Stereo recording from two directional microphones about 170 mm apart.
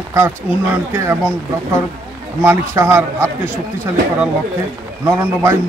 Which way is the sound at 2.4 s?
15° right (ahead or behind).